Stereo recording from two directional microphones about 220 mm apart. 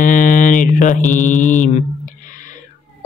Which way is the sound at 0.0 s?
35° left (ahead or behind).